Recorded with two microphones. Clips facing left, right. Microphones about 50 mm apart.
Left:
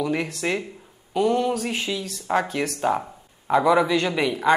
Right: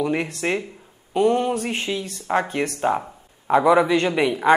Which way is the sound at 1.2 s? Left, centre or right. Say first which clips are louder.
Right 2 dB; right.